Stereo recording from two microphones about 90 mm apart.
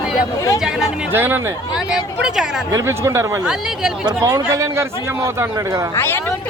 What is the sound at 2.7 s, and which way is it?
Speech, 30° right (ahead or behind).